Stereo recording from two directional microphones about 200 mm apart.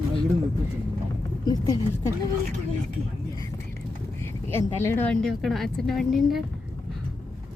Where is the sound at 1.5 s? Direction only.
20° left (ahead or behind).